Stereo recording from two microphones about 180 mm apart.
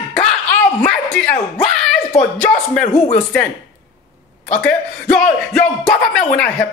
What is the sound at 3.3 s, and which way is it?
Speech, 5° left (ahead or behind).